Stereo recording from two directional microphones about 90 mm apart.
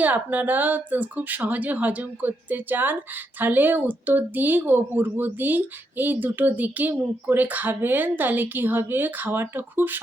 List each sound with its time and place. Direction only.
0.0 s speech: 20° right (ahead or behind)